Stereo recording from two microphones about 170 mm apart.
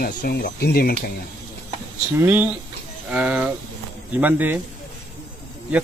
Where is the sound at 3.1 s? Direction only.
5° right (ahead or behind).